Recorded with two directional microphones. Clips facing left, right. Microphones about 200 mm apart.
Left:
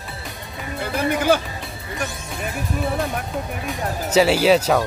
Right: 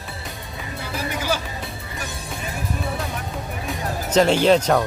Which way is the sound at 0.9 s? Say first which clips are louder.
Left 7 dB; 55° left (ahead or behind).